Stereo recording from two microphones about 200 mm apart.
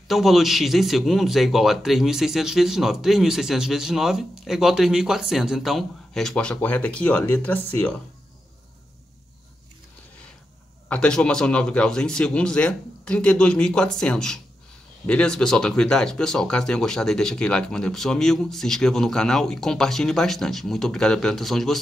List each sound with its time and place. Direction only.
0.1 s speech: centre (ahead or behind)
10.9 s speech: 5° left (ahead or behind)